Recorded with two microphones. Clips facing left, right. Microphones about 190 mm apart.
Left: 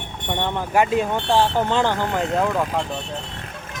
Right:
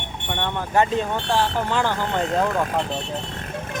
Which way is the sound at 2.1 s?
Centre (ahead or behind).